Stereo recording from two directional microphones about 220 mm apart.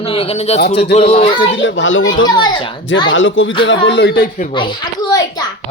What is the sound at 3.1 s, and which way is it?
Speech, 60° left (ahead or behind).